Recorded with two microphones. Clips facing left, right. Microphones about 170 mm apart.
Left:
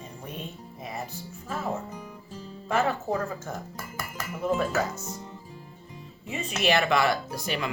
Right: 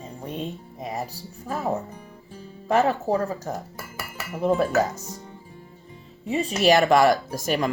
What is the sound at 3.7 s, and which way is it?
Dishes, 5° right (ahead or behind).